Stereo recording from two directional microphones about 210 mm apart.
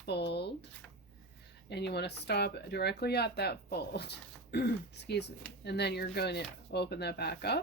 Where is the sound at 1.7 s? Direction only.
50° left (ahead or behind).